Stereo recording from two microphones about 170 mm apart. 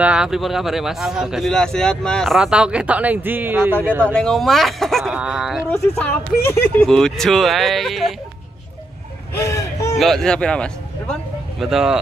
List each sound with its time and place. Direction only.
0.0 s a man's voice: 5° right (ahead or behind)
4.0 s a man's voice: 5° left (ahead or behind)
5.7 s a man's voice: 10° left (ahead or behind)
9.3 s a sound: 15° left (ahead or behind)
9.9 s a man's voice: centre (ahead or behind)